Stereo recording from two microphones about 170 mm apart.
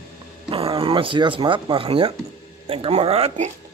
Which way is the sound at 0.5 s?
35° right (ahead or behind).